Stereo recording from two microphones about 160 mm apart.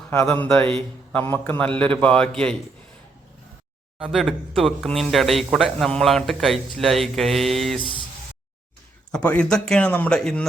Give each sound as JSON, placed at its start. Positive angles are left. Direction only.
{"t": 0.1, "sound": "a man's voice", "side_deg": 15}
{"t": 3.9, "sound": "speech", "side_deg": 0}
{"t": 7.8, "sound": "speech", "side_deg": 30}
{"t": 9.1, "sound": "speech", "side_deg": 5}